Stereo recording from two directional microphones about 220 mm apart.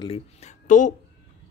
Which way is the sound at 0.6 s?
35° left (ahead or behind).